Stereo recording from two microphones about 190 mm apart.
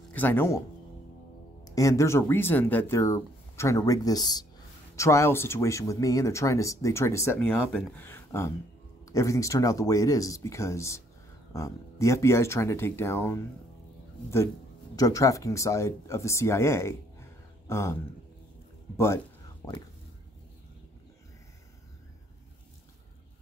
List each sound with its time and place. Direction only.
0.1 s speech: 10° left (ahead or behind)
1.6 s speech: 15° left (ahead or behind)
15.0 s speech: 20° left (ahead or behind)